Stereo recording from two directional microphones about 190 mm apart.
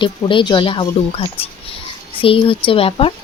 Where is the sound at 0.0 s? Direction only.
25° left (ahead or behind).